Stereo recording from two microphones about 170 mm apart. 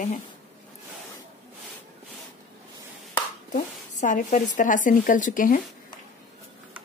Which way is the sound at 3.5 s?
50° left (ahead or behind).